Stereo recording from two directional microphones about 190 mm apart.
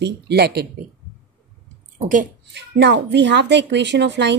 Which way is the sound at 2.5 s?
65° right (ahead or behind).